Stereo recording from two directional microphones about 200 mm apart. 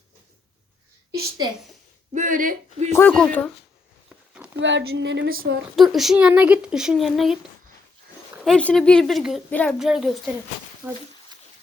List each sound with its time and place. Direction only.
1.4 s a woman's voice: 20° right (ahead or behind)
2.1 s speech: 40° right (ahead or behind)
2.9 s speech: 5° left (ahead or behind)
4.5 s a woman's voice: 60° right (ahead or behind)
5.7 s a woman's voice: centre (ahead or behind)
8.4 s a woman's voice: 5° left (ahead or behind)